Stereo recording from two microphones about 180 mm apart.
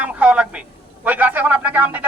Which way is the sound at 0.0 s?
5° right (ahead or behind).